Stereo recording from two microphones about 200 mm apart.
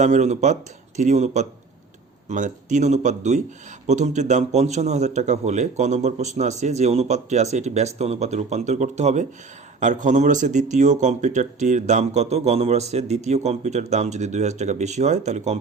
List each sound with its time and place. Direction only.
0.0 s speech: 35° right (ahead or behind)